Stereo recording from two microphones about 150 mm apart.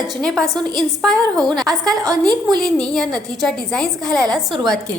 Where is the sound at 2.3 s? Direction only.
25° right (ahead or behind).